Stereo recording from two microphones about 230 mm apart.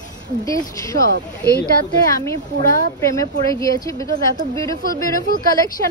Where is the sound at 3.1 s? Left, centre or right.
Centre.